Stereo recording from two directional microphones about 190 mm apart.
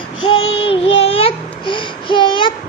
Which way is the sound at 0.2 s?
30° left (ahead or behind).